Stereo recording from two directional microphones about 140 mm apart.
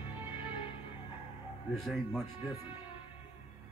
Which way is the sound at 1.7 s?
Centre (ahead or behind).